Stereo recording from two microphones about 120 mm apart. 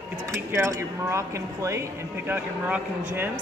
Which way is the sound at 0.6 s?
25° right (ahead or behind).